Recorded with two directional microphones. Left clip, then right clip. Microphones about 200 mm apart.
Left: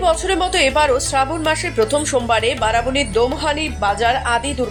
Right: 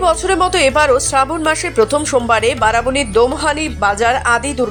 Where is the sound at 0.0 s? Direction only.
15° right (ahead or behind).